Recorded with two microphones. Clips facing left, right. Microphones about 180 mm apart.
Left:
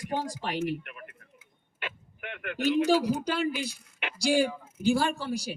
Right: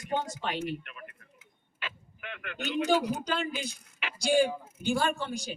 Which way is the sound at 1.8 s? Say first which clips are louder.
Left 3 dB; 55° left (ahead or behind).